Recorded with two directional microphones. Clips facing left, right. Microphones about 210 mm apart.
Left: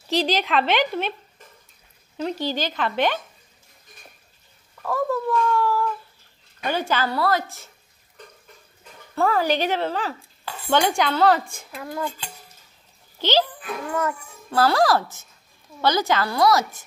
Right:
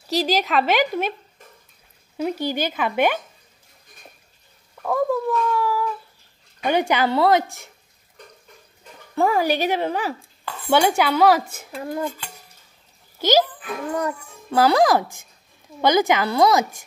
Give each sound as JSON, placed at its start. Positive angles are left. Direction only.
{"t": 0.1, "sound": "a woman's voice", "side_deg": -45}
{"t": 0.4, "sound": "a child's voice", "side_deg": -5}
{"t": 2.1, "sound": "a child's voice", "side_deg": -10}
{"t": 4.8, "sound": "a child's voice", "side_deg": -10}
{"t": 9.1, "sound": "a child's voice", "side_deg": -15}
{"t": 11.7, "sound": "dishes", "side_deg": -30}
{"t": 13.2, "sound": "a child's voice", "side_deg": -10}